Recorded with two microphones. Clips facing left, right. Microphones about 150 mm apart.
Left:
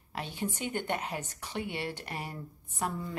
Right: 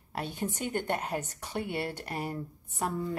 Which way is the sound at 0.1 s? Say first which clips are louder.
Right 2 dB; 45° right (ahead or behind).